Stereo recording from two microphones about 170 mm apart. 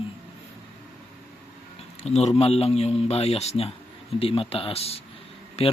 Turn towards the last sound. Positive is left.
turn(degrees=40)  # may be behind; listen again after turning